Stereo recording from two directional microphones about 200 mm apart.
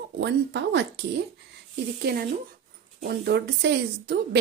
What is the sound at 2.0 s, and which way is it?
A woman's voice, 50° right (ahead or behind).